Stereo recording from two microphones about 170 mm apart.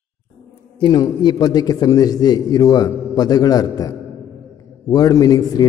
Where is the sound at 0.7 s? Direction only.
25° left (ahead or behind).